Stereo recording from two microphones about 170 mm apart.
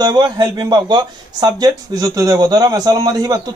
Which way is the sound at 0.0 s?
25° right (ahead or behind).